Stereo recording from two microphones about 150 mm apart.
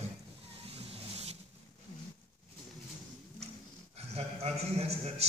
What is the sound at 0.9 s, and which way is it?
Vehicle, 40° right (ahead or behind).